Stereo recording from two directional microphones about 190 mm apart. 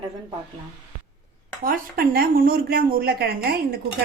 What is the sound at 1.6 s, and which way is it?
Speech, 50° right (ahead or behind).